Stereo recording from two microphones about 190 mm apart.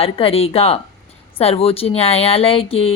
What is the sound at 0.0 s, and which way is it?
Speech, 30° left (ahead or behind).